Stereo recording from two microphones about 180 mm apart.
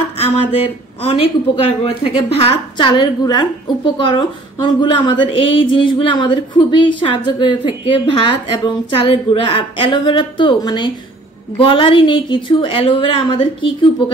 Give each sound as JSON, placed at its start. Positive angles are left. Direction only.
{"t": 1.0, "sound": "a woman's voice", "side_deg": 30}